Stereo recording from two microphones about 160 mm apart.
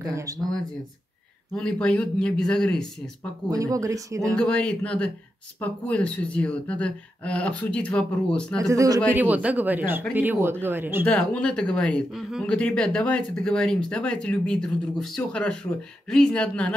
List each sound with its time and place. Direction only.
0.0 s speech: 20° right (ahead or behind)
1.5 s speech: 5° left (ahead or behind)
3.5 s speech: 20° right (ahead or behind)
4.4 s speech: 5° left (ahead or behind)
8.5 s speech: 20° right (ahead or behind)
9.2 s speech: 10° right (ahead or behind)
11.1 s speech: 10° left (ahead or behind)